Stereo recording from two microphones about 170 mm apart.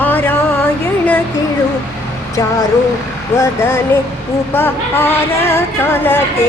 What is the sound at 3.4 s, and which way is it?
Speech, 15° left (ahead or behind).